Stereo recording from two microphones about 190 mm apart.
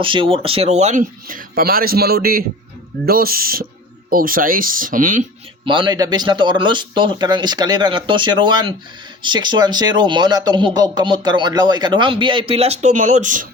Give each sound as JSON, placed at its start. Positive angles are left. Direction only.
{"t": 0.0, "sound": "speech", "side_deg": -25}
{"t": 5.6, "sound": "speech", "side_deg": -25}